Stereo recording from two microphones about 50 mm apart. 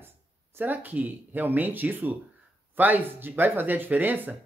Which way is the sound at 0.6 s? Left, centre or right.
Right.